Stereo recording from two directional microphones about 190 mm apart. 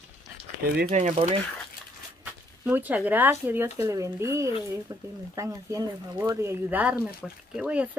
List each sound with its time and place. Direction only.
0.8 s speech: 35° right (ahead or behind)
2.6 s speech: 10° right (ahead or behind)